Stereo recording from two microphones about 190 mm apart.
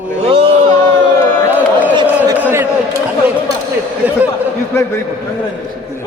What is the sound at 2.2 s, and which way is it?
Speech, 10° right (ahead or behind).